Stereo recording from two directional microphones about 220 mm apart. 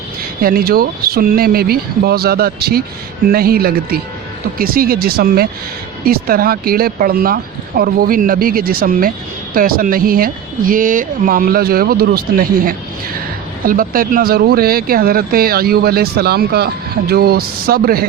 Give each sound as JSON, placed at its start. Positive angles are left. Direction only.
{"t": 0.4, "sound": "speech", "side_deg": -40}